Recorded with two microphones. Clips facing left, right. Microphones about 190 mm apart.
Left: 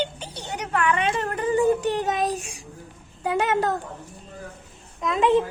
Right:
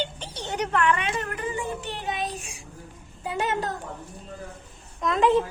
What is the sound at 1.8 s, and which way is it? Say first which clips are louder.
Child singing: left 8 dB; 45° left (ahead or behind).